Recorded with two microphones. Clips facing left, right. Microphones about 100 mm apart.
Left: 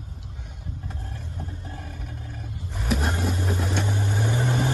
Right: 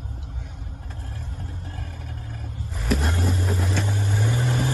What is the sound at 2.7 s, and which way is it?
Vehicle, centre (ahead or behind).